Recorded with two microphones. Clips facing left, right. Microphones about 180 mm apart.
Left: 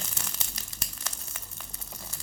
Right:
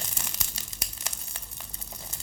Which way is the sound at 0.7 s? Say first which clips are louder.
Even; 20° right (ahead or behind).